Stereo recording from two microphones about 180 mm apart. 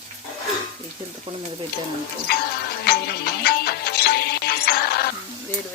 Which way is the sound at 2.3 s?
60° left (ahead or behind).